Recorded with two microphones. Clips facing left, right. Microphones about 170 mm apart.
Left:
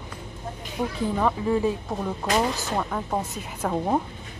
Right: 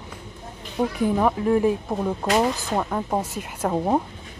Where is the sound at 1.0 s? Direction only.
15° right (ahead or behind).